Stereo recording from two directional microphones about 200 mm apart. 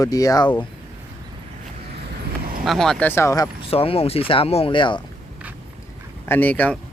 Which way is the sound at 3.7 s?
30° left (ahead or behind).